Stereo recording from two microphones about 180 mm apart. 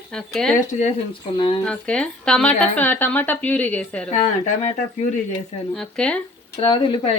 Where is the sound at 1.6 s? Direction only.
5° left (ahead or behind).